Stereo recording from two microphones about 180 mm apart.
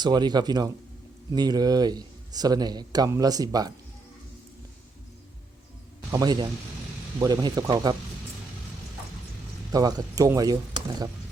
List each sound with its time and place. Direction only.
0.0 s a man's voice: 25° right (ahead or behind)
6.1 s a man's voice: 20° right (ahead or behind)
9.7 s a man's voice: 20° right (ahead or behind)